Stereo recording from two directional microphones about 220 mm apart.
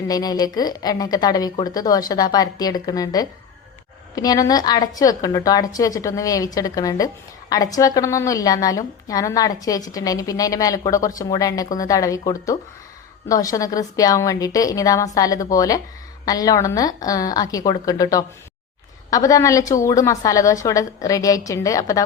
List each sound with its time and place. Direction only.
0.1 s a woman's voice: 15° left (ahead or behind)